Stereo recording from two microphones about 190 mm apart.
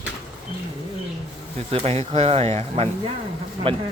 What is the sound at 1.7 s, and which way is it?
Speech, 30° right (ahead or behind).